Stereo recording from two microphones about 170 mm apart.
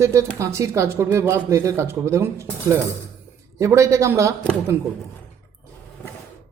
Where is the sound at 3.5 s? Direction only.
15° right (ahead or behind).